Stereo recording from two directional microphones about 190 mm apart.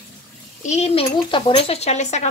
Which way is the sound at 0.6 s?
35° left (ahead or behind).